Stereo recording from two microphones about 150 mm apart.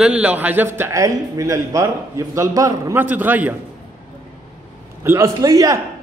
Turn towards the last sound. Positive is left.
turn(degrees=-25)  # may be behind; listen again after turning